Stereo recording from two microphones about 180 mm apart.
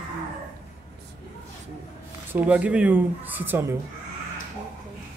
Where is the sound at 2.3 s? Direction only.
10° right (ahead or behind).